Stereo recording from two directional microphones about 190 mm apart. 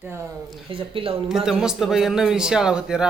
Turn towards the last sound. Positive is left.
turn(degrees=-5)  # may be behind; listen again after turning